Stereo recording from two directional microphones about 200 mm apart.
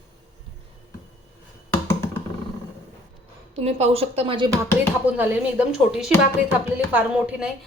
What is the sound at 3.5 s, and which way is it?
Speech, 30° right (ahead or behind).